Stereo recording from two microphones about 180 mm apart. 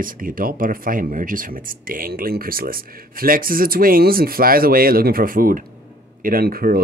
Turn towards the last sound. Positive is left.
turn(degrees=-55)  # may be behind; listen again after turning